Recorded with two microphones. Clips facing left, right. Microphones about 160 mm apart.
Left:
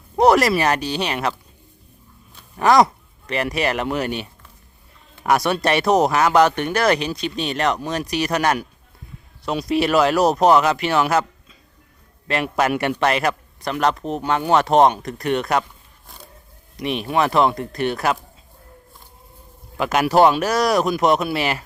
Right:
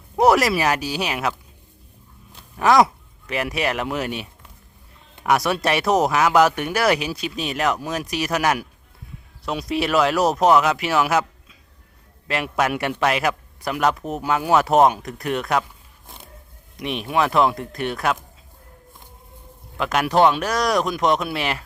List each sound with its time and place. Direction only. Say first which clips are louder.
0.2 s a man's voice: left 2 dB; 5° right (ahead or behind)
2.6 s a man's voice: left 1 dB; centre (ahead or behind)
16.0 s a sound: even; 20° right (ahead or behind)
16.7 s a man's voice: left 2 dB; centre (ahead or behind)
19.7 s a man's voice: left 3 dB; 5° left (ahead or behind)